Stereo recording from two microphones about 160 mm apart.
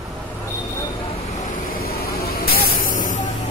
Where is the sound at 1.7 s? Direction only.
70° left (ahead or behind).